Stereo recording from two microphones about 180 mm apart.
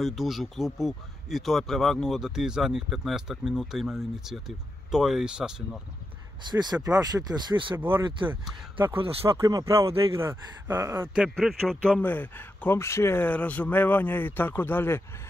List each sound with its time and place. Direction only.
0.0 s speech: centre (ahead or behind)
6.5 s speech: 20° right (ahead or behind)
7.7 s speech: 10° right (ahead or behind)
8.9 s speech: 30° right (ahead or behind)
9.4 s speech: 20° right (ahead or behind)
11.1 s speech: centre (ahead or behind)